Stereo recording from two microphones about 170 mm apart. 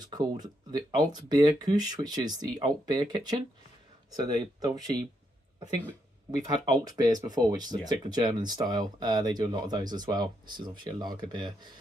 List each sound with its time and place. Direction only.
0.0 s speech: 25° right (ahead or behind)
6.3 s speech: 25° right (ahead or behind)